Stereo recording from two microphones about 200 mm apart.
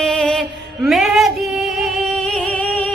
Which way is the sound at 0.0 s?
5° left (ahead or behind).